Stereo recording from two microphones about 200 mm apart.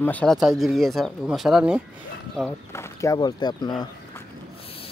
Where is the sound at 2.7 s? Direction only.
15° left (ahead or behind).